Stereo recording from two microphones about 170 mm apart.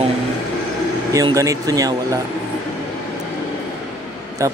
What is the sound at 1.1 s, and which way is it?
Speech, 20° right (ahead or behind).